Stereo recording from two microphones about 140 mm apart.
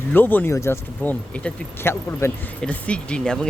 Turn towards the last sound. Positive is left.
turn(degrees=5)  # may be behind; listen again after turning